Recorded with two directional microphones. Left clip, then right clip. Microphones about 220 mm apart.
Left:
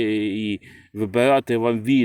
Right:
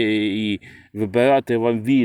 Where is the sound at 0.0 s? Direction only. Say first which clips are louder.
Right 2 dB; 15° right (ahead or behind).